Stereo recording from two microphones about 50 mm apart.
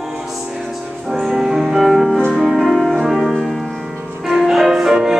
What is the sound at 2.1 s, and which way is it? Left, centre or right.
Music, centre.